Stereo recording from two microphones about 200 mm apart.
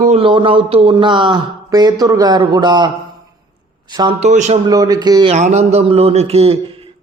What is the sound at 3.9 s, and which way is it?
Speech, 20° right (ahead or behind).